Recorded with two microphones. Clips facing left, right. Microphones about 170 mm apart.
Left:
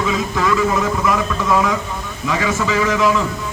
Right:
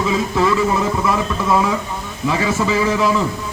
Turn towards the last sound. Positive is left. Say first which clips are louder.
# even
turn(degrees=-30)  # may be behind; listen again after turning